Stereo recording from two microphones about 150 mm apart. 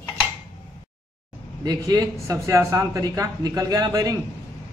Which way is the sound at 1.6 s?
25° right (ahead or behind).